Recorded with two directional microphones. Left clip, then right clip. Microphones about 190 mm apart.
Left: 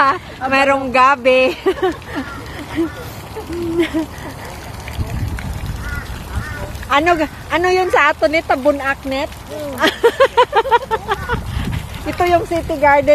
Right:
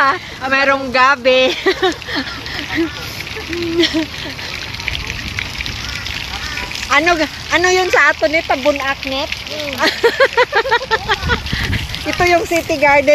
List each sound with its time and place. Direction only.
0.0 s speech: 5° left (ahead or behind)
1.6 s speech: centre (ahead or behind)
6.9 s speech: 5° left (ahead or behind)
8.2 s speech: 20° left (ahead or behind)
9.8 s speech: centre (ahead or behind)